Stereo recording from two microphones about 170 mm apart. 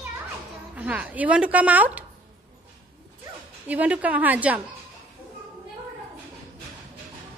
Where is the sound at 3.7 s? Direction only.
10° right (ahead or behind).